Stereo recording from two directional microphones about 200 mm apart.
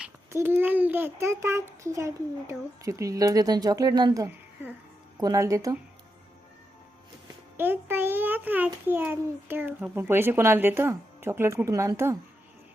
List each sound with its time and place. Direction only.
0.0 s a child's voice: 10° right (ahead or behind)
7.5 s a child's voice: 10° right (ahead or behind)